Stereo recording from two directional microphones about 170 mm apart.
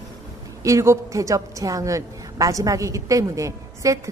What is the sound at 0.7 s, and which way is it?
A woman's voice, 20° right (ahead or behind).